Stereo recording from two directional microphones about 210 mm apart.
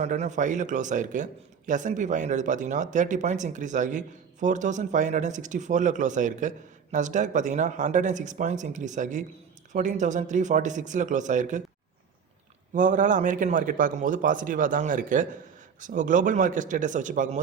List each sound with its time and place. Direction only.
0.0 s a man's voice: 35° right (ahead or behind)
12.7 s a man's voice: 40° right (ahead or behind)